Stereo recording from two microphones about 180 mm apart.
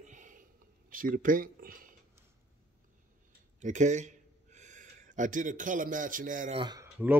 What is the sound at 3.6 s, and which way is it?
Speech, 40° right (ahead or behind).